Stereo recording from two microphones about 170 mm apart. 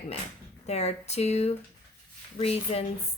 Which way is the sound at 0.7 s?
40° left (ahead or behind).